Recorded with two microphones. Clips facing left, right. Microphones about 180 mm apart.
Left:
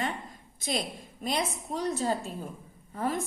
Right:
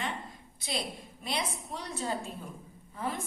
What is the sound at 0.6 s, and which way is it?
A woman's voice, 45° left (ahead or behind).